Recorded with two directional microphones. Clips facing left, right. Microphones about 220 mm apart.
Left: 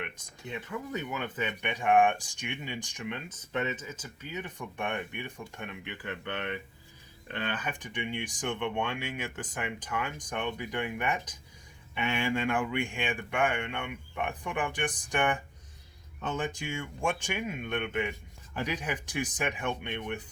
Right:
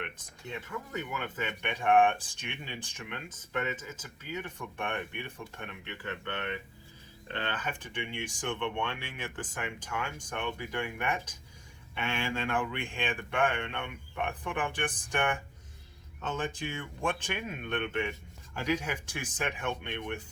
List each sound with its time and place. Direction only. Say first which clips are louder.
0.9 s speech: left 1 dB; 15° left (ahead or behind)
7.3 s speech: left 1 dB; 15° left (ahead or behind)